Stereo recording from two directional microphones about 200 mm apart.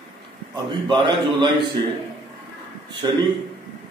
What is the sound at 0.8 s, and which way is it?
Speech, 25° right (ahead or behind).